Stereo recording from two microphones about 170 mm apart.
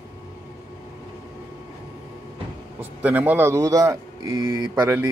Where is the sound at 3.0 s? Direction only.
10° right (ahead or behind).